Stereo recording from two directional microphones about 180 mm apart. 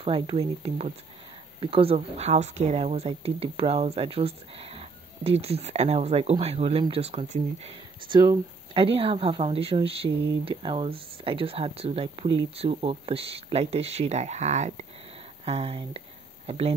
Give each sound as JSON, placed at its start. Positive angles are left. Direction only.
{"t": 0.0, "sound": "speech", "side_deg": -30}